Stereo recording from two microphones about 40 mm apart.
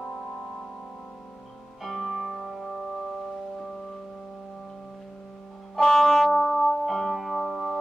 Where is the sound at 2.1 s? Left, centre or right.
Centre.